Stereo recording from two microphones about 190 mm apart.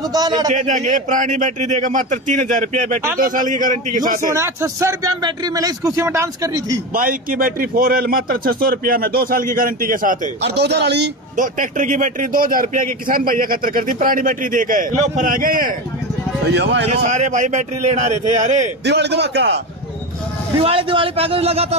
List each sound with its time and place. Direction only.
0.1 s a man's voice: 20° right (ahead or behind)
0.5 s a man's voice: 40° right (ahead or behind)
4.3 s speech: 15° right (ahead or behind)
6.9 s a man's voice: 50° right (ahead or behind)
11.3 s a man's voice: 45° right (ahead or behind)
16.4 s a man's voice: 65° right (ahead or behind)
16.9 s a man's voice: 40° right (ahead or behind)
18.9 s a man's voice: 65° right (ahead or behind)
20.6 s a man's voice: 30° right (ahead or behind)